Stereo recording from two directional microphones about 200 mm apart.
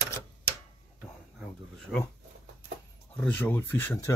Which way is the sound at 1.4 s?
Centre (ahead or behind).